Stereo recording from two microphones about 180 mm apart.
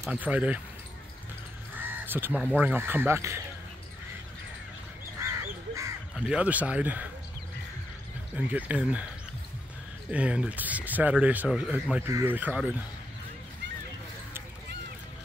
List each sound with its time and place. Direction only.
0.0 s speech: 10° right (ahead or behind)
1.8 s crow: 10° right (ahead or behind)
2.5 s speech: 10° right (ahead or behind)
6.1 s speech: 5° right (ahead or behind)
8.4 s speech: 10° right (ahead or behind)
10.1 s speech: 5° right (ahead or behind)